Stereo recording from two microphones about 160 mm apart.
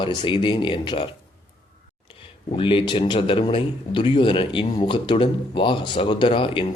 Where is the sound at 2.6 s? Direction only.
35° left (ahead or behind).